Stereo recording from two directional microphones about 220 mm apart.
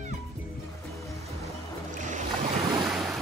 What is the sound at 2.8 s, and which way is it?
Boat, centre (ahead or behind).